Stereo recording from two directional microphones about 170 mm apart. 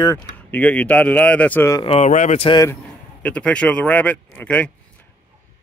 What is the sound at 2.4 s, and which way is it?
Speech, 25° left (ahead or behind).